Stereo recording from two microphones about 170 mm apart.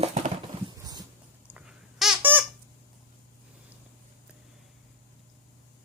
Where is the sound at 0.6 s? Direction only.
20° right (ahead or behind).